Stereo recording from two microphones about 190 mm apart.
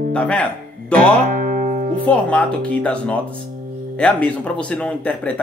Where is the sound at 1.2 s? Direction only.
45° right (ahead or behind).